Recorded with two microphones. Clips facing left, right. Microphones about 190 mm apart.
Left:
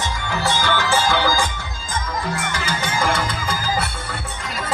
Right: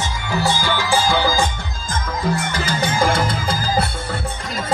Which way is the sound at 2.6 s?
40° right (ahead or behind).